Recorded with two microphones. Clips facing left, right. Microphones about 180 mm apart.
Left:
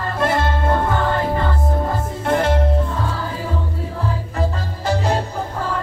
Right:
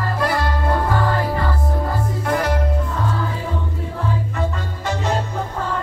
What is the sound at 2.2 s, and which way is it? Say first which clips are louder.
Music: left 3 dB; 25° left (ahead or behind).